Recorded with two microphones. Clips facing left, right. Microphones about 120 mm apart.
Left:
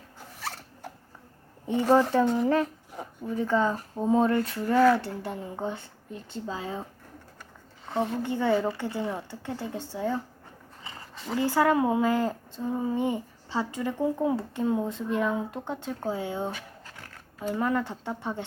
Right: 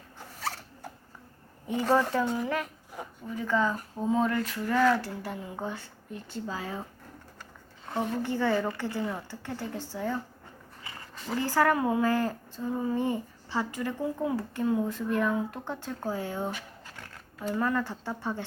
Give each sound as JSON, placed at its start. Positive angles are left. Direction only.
{"t": 1.6, "sound": "speech", "side_deg": 25}
{"t": 7.9, "sound": "speech", "side_deg": 20}
{"t": 11.3, "sound": "speech", "side_deg": 20}